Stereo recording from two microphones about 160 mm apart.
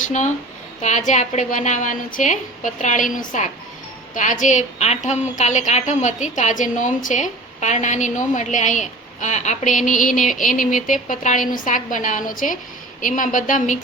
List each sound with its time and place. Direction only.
0.0 s a woman's voice: 50° left (ahead or behind)